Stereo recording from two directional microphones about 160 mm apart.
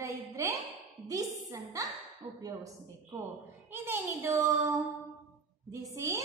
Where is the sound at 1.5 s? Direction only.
20° right (ahead or behind).